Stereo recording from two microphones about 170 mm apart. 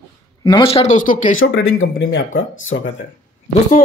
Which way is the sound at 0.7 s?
40° left (ahead or behind).